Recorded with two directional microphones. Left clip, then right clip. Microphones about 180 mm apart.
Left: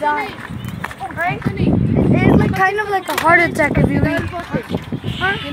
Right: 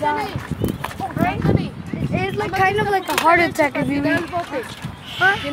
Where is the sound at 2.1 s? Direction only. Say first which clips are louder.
Left 3 dB; 5° left (ahead or behind).